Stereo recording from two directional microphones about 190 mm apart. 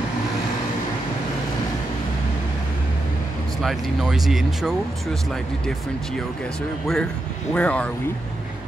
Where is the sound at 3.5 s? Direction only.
Centre (ahead or behind).